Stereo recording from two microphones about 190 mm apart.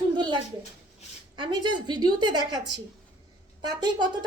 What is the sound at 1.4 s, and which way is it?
A woman's voice, 25° right (ahead or behind).